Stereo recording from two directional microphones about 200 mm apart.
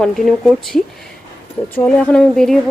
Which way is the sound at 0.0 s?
Centre (ahead or behind).